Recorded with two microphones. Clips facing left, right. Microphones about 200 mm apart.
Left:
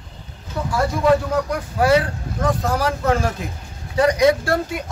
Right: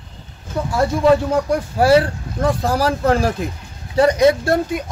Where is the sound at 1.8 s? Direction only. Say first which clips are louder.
Right 3 dB; 30° right (ahead or behind).